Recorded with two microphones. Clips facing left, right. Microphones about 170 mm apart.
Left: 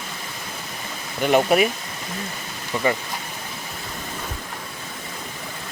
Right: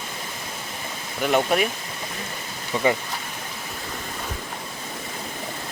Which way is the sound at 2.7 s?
20° right (ahead or behind).